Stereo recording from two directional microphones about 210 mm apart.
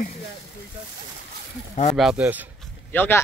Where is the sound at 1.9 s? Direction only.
5° right (ahead or behind).